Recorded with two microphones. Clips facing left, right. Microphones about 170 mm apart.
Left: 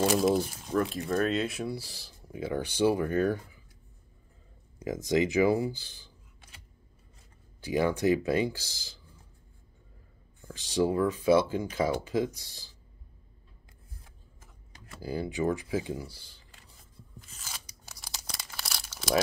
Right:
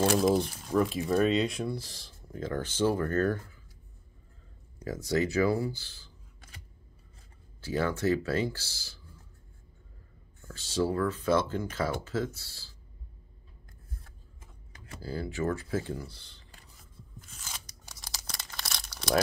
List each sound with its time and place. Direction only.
0.2 s speech: 5° left (ahead or behind)
4.8 s speech: 15° left (ahead or behind)
7.6 s speech: 15° left (ahead or behind)
10.4 s speech: 15° left (ahead or behind)
15.0 s speech: 15° left (ahead or behind)
17.2 s tearing: centre (ahead or behind)